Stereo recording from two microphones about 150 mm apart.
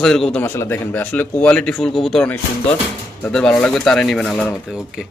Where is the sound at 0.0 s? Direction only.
5° left (ahead or behind).